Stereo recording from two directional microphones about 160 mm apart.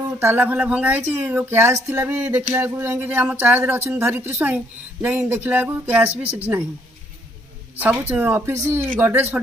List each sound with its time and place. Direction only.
0.2 s speech: 10° right (ahead or behind)
7.8 s speech: 10° right (ahead or behind)